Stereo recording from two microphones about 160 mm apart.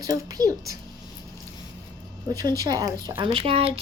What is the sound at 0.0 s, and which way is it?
Speech, 20° right (ahead or behind).